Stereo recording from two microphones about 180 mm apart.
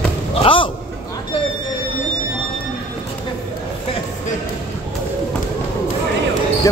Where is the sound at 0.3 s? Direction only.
30° left (ahead or behind).